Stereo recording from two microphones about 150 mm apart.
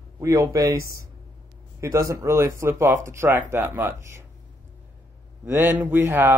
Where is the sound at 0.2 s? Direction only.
20° right (ahead or behind).